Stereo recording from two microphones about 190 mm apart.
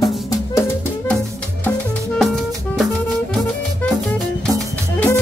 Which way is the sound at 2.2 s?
Centre (ahead or behind).